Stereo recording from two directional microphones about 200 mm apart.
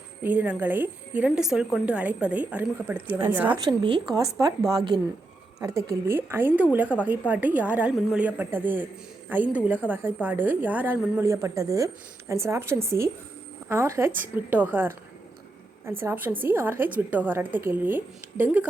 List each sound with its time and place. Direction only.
0.2 s a woman's voice: 10° right (ahead or behind)
3.6 s a woman's voice: 20° right (ahead or behind)